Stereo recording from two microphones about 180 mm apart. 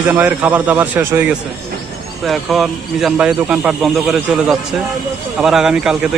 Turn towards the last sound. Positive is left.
turn(degrees=-5)  # may be behind; listen again after turning